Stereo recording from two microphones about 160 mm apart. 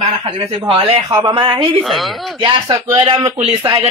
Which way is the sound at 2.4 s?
30° right (ahead or behind).